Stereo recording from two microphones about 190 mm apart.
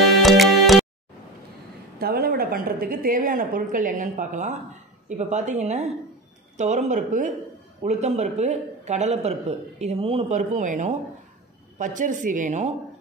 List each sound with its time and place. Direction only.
0.1 s music: centre (ahead or behind)
2.0 s a woman's voice: 55° right (ahead or behind)